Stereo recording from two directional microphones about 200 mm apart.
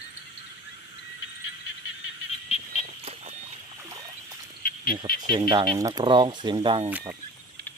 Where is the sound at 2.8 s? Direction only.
30° right (ahead or behind).